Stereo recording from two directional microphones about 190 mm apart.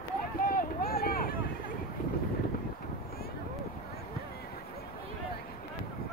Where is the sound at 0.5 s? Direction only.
50° left (ahead or behind).